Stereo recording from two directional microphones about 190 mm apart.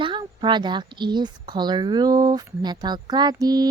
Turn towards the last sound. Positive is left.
turn(degrees=-20)  # may be behind; listen again after turning